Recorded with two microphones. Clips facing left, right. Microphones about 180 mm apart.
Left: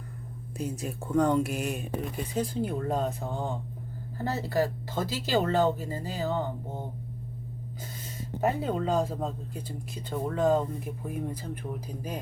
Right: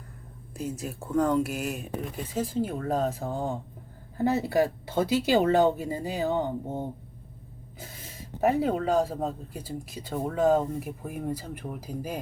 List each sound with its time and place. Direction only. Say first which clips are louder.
0.5 s speech: even; centre (ahead or behind)
4.2 s speech: right 4 dB; 15° right (ahead or behind)
8.4 s speech: right 3 dB; 10° right (ahead or behind)